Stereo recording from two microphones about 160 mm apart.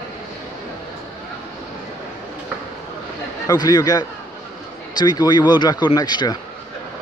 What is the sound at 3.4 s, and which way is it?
Speech, 25° left (ahead or behind).